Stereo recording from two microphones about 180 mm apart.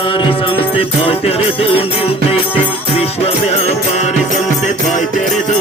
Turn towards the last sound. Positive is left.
turn(degrees=35)  # may be behind; listen again after turning